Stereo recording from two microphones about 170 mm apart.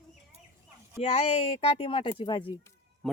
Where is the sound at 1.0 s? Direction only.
35° left (ahead or behind).